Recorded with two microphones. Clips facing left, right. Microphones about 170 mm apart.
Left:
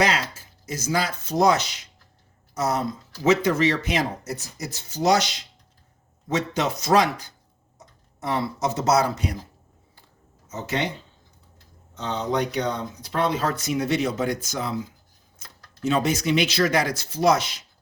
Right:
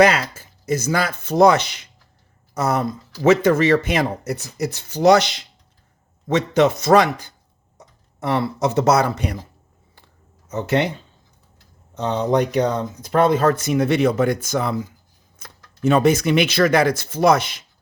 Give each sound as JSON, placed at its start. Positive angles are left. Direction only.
{"t": 0.0, "sound": "speech", "side_deg": -55}
{"t": 8.2, "sound": "speech", "side_deg": -65}
{"t": 10.5, "sound": "speech", "side_deg": -60}
{"t": 13.0, "sound": "speech", "side_deg": -50}